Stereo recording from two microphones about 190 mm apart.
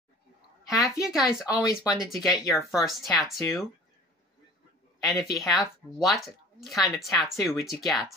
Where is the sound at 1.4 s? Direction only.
20° left (ahead or behind).